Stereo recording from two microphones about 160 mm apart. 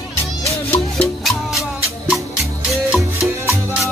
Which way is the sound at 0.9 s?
5° left (ahead or behind).